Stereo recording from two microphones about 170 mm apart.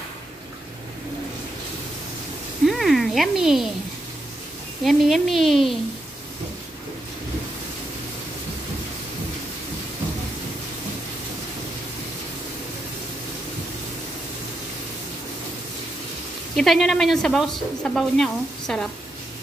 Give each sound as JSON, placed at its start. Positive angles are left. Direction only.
{"t": 2.6, "sound": "a sound", "side_deg": 0}
{"t": 4.8, "sound": "a woman's voice", "side_deg": 0}
{"t": 16.5, "sound": "a woman's voice", "side_deg": 0}